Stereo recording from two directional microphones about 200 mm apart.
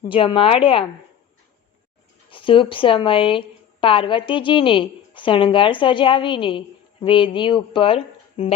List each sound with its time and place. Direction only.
0.1 s a woman's voice: 25° left (ahead or behind)
2.3 s a woman's voice: 25° left (ahead or behind)